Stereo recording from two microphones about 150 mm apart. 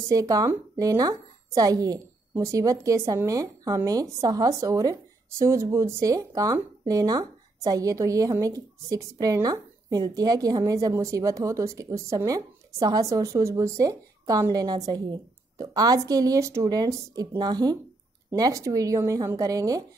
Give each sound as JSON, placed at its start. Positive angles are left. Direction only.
{"t": 0.1, "sound": "a woman's voice", "side_deg": -25}